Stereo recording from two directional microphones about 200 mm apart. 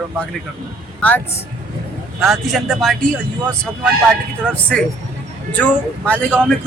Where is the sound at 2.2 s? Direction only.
Centre (ahead or behind).